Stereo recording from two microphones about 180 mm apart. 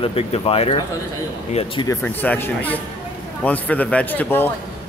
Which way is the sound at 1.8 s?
10° left (ahead or behind).